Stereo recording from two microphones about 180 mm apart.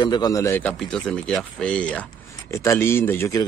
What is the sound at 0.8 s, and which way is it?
Speech, 5° left (ahead or behind).